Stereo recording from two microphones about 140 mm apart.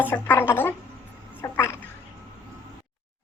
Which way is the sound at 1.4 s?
15° left (ahead or behind).